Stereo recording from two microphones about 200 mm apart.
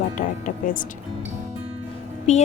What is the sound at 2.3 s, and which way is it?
Speech, 35° left (ahead or behind).